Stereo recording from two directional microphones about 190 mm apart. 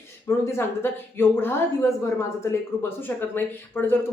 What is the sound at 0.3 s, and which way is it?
Speech, 15° left (ahead or behind).